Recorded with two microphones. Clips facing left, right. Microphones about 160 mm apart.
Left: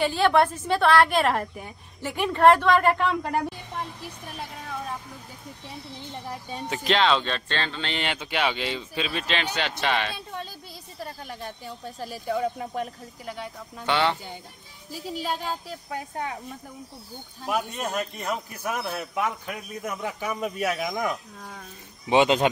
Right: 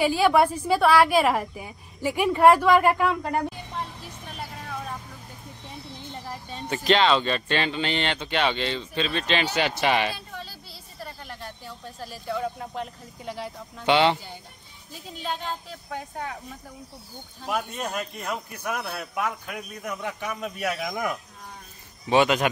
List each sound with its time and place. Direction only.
0.0 s a woman's voice: 5° right (ahead or behind)
6.7 s a woman's voice: centre (ahead or behind)
7.9 s speech: 5° left (ahead or behind)
9.4 s a woman's voice: 5° right (ahead or behind)
11.2 s speech: 15° left (ahead or behind)
13.2 s speech: 30° right (ahead or behind)
13.8 s speech: 20° right (ahead or behind)
14.9 s speech: 5° left (ahead or behind)
17.5 s a man's voice: centre (ahead or behind)
22.1 s speech: 25° left (ahead or behind)